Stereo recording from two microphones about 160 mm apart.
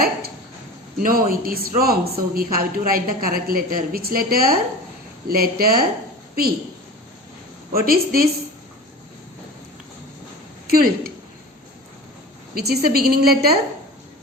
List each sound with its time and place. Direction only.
0.9 s speech: 65° right (ahead or behind)
7.7 s speech: 70° right (ahead or behind)
10.7 s speech: 70° right (ahead or behind)
12.5 s speech: 80° right